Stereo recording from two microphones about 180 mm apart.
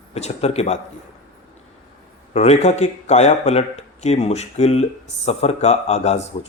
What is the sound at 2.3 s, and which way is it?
Speech, 35° left (ahead or behind).